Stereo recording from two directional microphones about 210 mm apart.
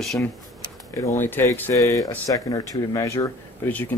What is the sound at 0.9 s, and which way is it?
Speech, 15° left (ahead or behind).